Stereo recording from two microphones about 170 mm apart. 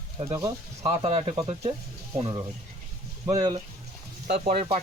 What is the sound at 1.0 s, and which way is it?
Speech, 35° right (ahead or behind).